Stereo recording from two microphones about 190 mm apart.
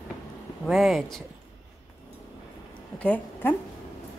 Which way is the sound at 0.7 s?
Centre (ahead or behind).